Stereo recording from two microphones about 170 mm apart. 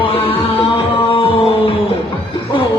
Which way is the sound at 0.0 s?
35° left (ahead or behind).